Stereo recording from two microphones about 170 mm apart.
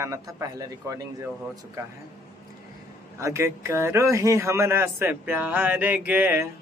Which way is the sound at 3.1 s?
15° right (ahead or behind).